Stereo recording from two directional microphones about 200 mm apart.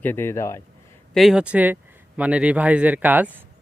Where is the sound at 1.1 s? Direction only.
Centre (ahead or behind).